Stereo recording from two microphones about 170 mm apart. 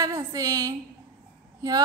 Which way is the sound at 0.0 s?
20° right (ahead or behind).